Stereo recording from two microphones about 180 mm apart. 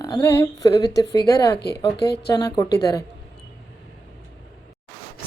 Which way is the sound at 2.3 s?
20° left (ahead or behind).